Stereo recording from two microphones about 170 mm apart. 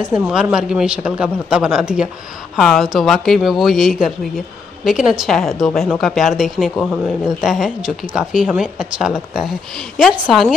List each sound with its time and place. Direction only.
0.0 s speech: 5° right (ahead or behind)